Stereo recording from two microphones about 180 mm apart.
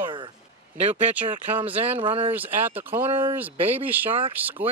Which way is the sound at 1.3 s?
30° right (ahead or behind).